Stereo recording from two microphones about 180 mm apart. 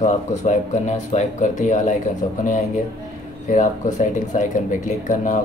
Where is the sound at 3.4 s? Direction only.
45° left (ahead or behind).